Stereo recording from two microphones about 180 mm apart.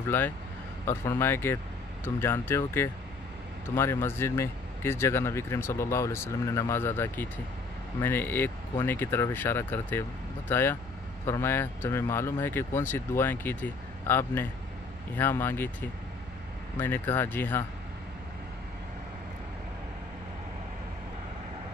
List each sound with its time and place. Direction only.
0.1 s speech: 10° left (ahead or behind)
16.7 s speech: 10° left (ahead or behind)